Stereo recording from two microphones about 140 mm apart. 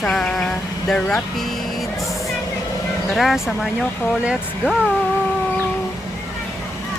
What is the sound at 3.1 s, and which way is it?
Speech, centre (ahead or behind).